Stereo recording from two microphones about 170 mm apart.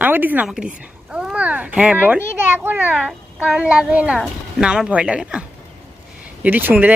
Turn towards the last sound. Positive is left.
turn(degrees=-10)  # may be behind; listen again after turning